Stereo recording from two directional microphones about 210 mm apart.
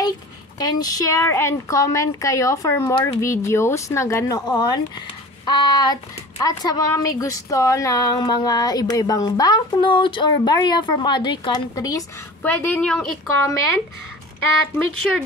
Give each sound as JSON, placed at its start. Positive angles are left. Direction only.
{"t": 0.6, "sound": "a woman's voice", "side_deg": 20}